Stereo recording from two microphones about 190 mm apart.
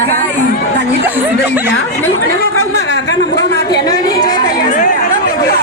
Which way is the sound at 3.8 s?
20° left (ahead or behind).